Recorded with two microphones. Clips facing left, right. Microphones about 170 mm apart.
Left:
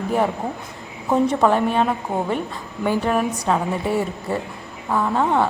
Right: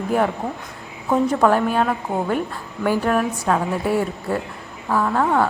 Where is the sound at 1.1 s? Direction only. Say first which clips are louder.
Even; centre (ahead or behind).